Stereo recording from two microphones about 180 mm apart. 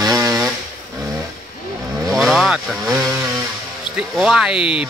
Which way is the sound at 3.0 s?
15° right (ahead or behind).